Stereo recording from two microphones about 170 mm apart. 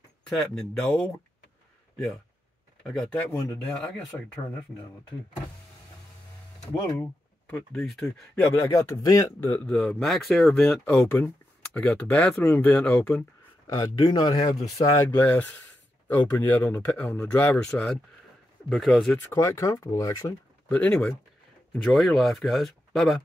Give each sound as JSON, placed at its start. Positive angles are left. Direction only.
{"t": 0.4, "sound": "speech", "side_deg": 0}
{"t": 2.9, "sound": "speech", "side_deg": 5}
{"t": 7.0, "sound": "speech", "side_deg": 10}
{"t": 8.5, "sound": "speech", "side_deg": 15}
{"t": 13.7, "sound": "speech", "side_deg": 20}
{"t": 14.4, "sound": "speech", "side_deg": 35}
{"t": 14.9, "sound": "speech", "side_deg": 15}
{"t": 19.1, "sound": "speech", "side_deg": 15}
{"t": 20.6, "sound": "speech", "side_deg": 10}